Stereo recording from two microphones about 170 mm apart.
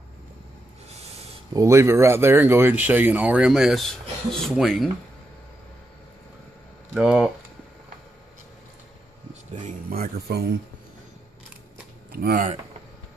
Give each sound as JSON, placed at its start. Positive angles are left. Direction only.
{"t": 1.5, "sound": "speech", "side_deg": -20}
{"t": 6.9, "sound": "speech", "side_deg": -5}
{"t": 9.8, "sound": "speech", "side_deg": -60}
{"t": 12.1, "sound": "speech", "side_deg": -60}